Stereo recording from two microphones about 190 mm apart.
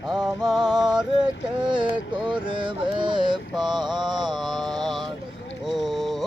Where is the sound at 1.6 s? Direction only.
25° right (ahead or behind).